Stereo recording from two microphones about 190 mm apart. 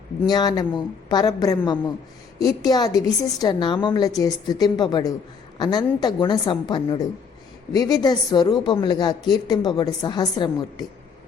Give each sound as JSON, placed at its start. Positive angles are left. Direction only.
{"t": 0.3, "sound": "a woman's voice", "side_deg": 20}